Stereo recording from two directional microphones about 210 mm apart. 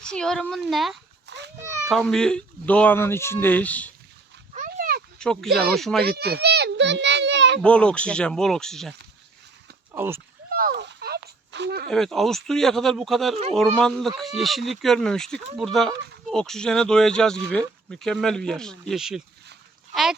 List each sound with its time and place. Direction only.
0.0 s speech: 5° left (ahead or behind)
1.3 s children playing: 55° right (ahead or behind)
1.6 s children playing: 15° right (ahead or behind)
1.9 s speech: centre (ahead or behind)
4.5 s a sound: 40° right (ahead or behind)
5.2 s speech: 5° left (ahead or behind)
6.0 s a sound: 50° right (ahead or behind)
7.6 s speech: 5° left (ahead or behind)
9.9 s speech: 10° right (ahead or behind)
10.5 s a sound: 45° right (ahead or behind)
11.9 s speech: centre (ahead or behind)